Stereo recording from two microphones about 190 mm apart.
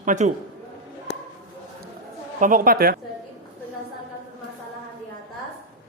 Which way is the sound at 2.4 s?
45° right (ahead or behind).